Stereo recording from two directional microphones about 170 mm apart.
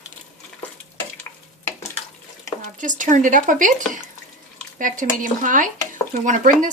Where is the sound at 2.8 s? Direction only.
50° right (ahead or behind).